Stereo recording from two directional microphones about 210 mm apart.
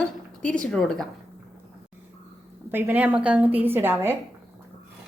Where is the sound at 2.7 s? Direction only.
10° right (ahead or behind).